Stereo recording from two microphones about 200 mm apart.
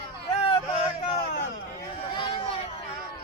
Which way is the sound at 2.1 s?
25° left (ahead or behind).